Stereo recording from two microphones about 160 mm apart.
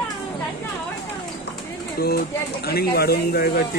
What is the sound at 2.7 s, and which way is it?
Speech, 75° left (ahead or behind).